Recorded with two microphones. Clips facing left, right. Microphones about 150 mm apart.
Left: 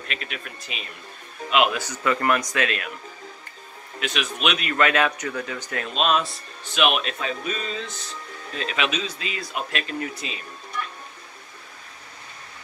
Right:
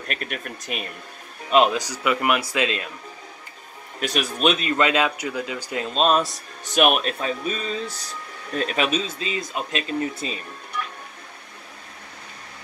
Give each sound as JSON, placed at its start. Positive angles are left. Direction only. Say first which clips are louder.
{"t": 0.1, "sound": "speech", "louder": "right 4 dB", "side_deg": -50}
{"t": 1.5, "sound": "speech", "louder": "right 3 dB", "side_deg": -35}
{"t": 1.8, "sound": "speech", "louder": "right 1 dB", "side_deg": -10}
{"t": 4.0, "sound": "speech", "louder": "right 4 dB", "side_deg": -40}
{"t": 5.9, "sound": "speech", "louder": "right 3 dB", "side_deg": -35}
{"t": 8.5, "sound": "speech", "louder": "right 4 dB", "side_deg": -45}
{"t": 9.0, "sound": "speech", "louder": "right 3 dB", "side_deg": -25}